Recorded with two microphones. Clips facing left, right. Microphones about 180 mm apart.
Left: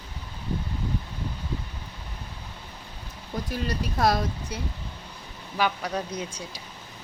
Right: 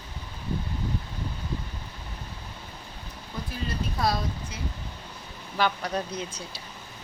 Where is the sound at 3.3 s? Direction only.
45° left (ahead or behind).